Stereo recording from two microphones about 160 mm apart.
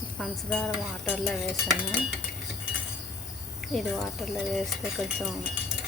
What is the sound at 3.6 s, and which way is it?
Stir, centre (ahead or behind).